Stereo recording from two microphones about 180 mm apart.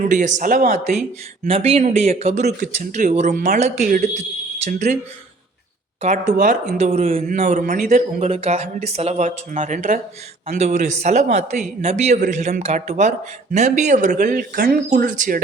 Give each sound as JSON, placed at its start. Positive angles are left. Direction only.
{"t": 0.0, "sound": "speech", "side_deg": -45}
{"t": 1.5, "sound": "a man's voice", "side_deg": -35}
{"t": 6.0, "sound": "a man's voice", "side_deg": -40}
{"t": 6.3, "sound": "a man's voice", "side_deg": -50}